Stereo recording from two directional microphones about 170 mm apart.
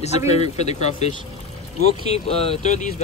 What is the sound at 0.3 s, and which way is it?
Speech, 40° left (ahead or behind).